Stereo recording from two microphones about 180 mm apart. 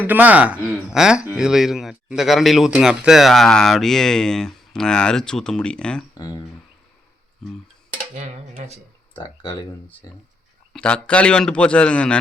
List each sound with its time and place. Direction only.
0.0 s speech: 10° right (ahead or behind)
6.1 s speech: 20° left (ahead or behind)
8.1 s speech: 35° right (ahead or behind)
9.1 s speech: 25° left (ahead or behind)
10.7 s speech: 5° left (ahead or behind)